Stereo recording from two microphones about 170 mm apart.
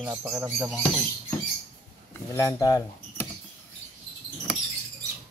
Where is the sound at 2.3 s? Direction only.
20° left (ahead or behind).